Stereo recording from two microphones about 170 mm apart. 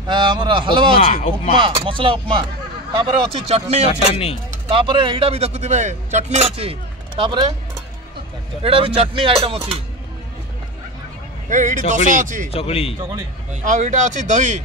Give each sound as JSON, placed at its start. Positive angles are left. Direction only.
{"t": 0.0, "sound": "speech", "side_deg": -25}
{"t": 1.0, "sound": "speech", "side_deg": 40}
{"t": 1.5, "sound": "speech", "side_deg": -30}
{"t": 4.1, "sound": "a man's voice", "side_deg": 35}
{"t": 4.5, "sound": "speech", "side_deg": -30}
{"t": 8.6, "sound": "speech", "side_deg": -30}
{"t": 11.4, "sound": "speech", "side_deg": -50}
{"t": 12.5, "sound": "a man's voice", "side_deg": 35}
{"t": 13.5, "sound": "speech", "side_deg": -45}